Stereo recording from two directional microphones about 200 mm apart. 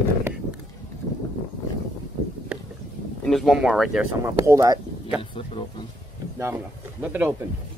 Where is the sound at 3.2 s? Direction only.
Centre (ahead or behind).